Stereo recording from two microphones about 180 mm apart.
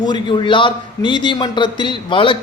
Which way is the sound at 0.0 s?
25° left (ahead or behind).